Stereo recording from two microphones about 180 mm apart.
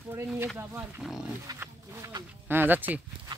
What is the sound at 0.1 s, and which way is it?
Speech, 15° right (ahead or behind).